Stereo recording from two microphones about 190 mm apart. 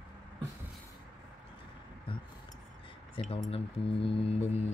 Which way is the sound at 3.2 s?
30° left (ahead or behind).